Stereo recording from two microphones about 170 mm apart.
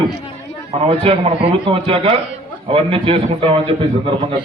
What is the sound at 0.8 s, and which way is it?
A man's voice, 35° right (ahead or behind).